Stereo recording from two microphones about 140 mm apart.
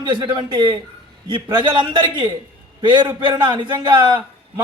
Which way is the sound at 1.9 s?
30° right (ahead or behind).